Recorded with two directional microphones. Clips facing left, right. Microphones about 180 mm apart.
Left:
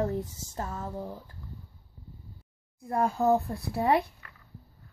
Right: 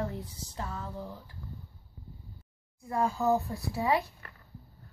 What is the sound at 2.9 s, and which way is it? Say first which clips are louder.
Speech: left 3 dB; 55° left (ahead or behind).